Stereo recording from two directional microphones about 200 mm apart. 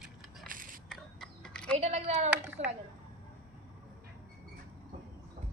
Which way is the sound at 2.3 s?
5° right (ahead or behind).